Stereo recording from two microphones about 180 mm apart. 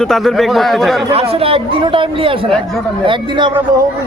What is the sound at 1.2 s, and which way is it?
A man's voice, 30° right (ahead or behind).